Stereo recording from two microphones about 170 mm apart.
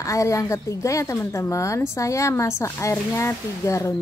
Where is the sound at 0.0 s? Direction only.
20° left (ahead or behind).